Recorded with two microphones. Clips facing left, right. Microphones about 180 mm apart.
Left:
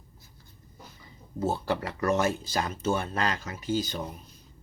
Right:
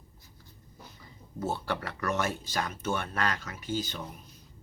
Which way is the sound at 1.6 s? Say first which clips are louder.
Left 5 dB; 25° left (ahead or behind).